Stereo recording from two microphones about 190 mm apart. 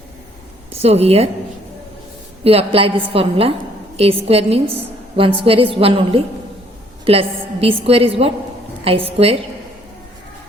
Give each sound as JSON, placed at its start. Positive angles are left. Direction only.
{"t": 0.7, "sound": "speech", "side_deg": -30}
{"t": 2.4, "sound": "a woman's voice", "side_deg": -30}